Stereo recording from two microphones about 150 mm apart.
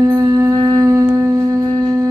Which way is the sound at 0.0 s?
20° right (ahead or behind).